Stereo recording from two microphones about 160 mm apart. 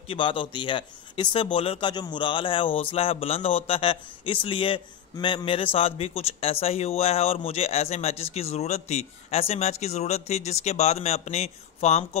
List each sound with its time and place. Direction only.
0.1 s speech: 30° left (ahead or behind)